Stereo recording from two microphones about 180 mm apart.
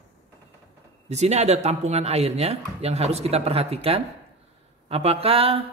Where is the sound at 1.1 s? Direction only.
35° right (ahead or behind).